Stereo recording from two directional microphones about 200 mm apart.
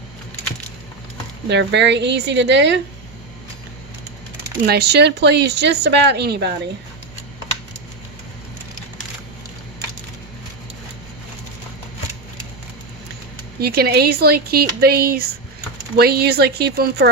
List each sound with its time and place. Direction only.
1.5 s speech: 60° right (ahead or behind)
4.6 s speech: 55° right (ahead or behind)
13.6 s speech: 50° right (ahead or behind)